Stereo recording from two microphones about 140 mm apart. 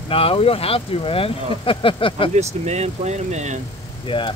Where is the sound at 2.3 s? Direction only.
50° right (ahead or behind).